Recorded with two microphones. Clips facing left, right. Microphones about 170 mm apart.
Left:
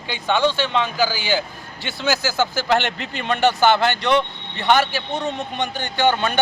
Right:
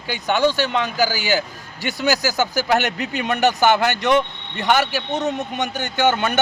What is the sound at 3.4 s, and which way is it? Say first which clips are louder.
A man's voice: even; 40° right (ahead or behind).